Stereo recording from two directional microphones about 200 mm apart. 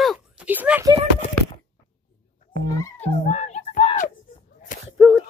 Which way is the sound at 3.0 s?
35° left (ahead or behind).